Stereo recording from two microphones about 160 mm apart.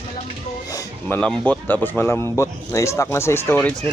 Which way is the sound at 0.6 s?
20° left (ahead or behind).